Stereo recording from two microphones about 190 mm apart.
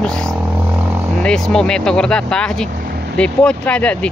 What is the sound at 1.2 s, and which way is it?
Speech, 5° left (ahead or behind).